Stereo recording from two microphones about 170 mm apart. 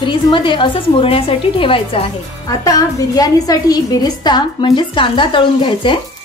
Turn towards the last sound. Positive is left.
turn(degrees=30)  # may be behind; listen again after turning